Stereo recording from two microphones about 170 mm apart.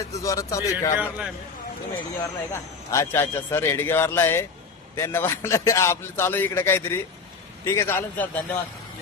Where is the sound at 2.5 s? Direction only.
15° left (ahead or behind).